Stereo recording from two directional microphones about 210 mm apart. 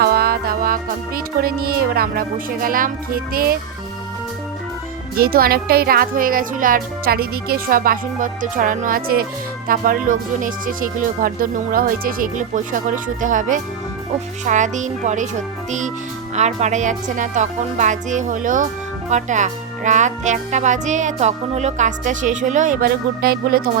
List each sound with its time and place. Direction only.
0.0 s music: 45° right (ahead or behind)
5.1 s speech: 45° right (ahead or behind)
9.6 s music: 40° right (ahead or behind)